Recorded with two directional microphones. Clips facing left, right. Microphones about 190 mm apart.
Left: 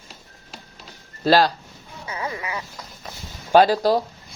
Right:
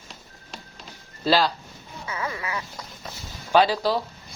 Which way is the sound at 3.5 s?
45° left (ahead or behind).